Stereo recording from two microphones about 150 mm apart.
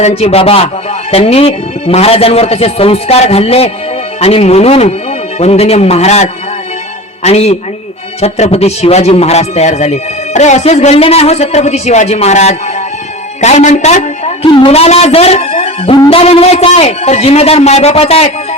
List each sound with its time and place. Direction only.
0.0 s a man's voice: 45° left (ahead or behind)